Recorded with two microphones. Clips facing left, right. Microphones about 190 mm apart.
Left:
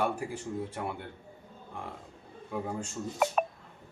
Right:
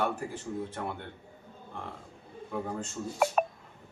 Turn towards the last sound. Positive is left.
turn(degrees=5)  # may be behind; listen again after turning